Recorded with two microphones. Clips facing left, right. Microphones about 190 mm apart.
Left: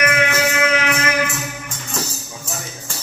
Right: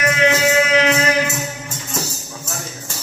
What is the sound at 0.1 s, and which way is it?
Music, 20° right (ahead or behind).